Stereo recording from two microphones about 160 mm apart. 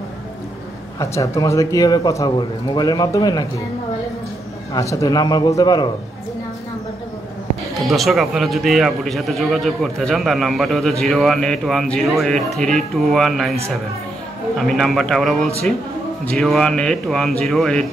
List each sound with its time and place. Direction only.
0.9 s a man's voice: 20° left (ahead or behind)
4.7 s a man's voice: 20° left (ahead or behind)
7.9 s a man's voice: centre (ahead or behind)
14.6 s a man's voice: centre (ahead or behind)